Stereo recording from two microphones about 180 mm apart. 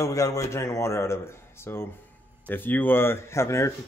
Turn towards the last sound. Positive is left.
turn(degrees=15)  # may be behind; listen again after turning